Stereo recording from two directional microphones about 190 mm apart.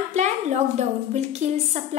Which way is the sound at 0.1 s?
35° right (ahead or behind).